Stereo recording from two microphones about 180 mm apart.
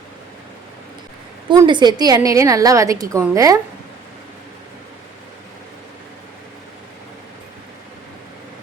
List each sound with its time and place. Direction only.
1.5 s a woman's voice: 25° right (ahead or behind)